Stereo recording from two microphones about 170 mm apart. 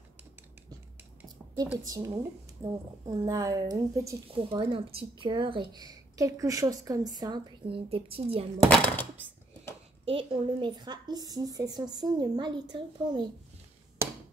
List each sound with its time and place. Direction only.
1.9 s a woman's voice: 20° right (ahead or behind)
4.4 s a woman's voice: 30° right (ahead or behind)
8.6 s speech: 10° left (ahead or behind)
10.0 s a woman's voice: 30° right (ahead or behind)
14.0 s a sound: 15° right (ahead or behind)